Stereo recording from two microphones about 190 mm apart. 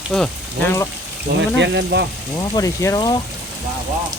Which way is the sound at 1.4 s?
70° right (ahead or behind).